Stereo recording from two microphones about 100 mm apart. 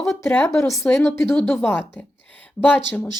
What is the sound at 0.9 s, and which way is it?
A woman's voice, 25° left (ahead or behind).